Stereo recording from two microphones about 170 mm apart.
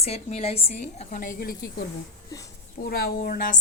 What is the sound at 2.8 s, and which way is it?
Speech, 65° left (ahead or behind).